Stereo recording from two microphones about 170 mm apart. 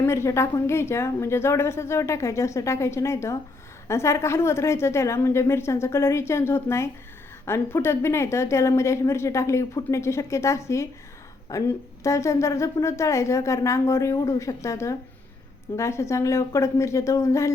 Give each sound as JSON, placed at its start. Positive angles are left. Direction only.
{"t": 0.0, "sound": "a woman's voice", "side_deg": 15}